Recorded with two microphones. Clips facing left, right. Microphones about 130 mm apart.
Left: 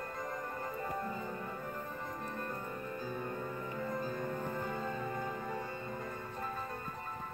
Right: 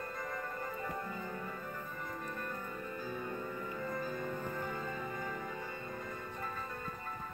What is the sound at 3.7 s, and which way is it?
Music, 15° left (ahead or behind).